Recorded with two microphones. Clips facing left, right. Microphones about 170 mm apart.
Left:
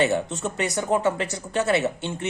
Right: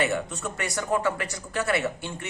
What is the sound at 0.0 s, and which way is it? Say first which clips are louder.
A woman's voice: left 4 dB; 25° left (ahead or behind).